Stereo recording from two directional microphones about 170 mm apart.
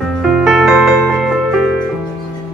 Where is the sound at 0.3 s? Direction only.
Centre (ahead or behind).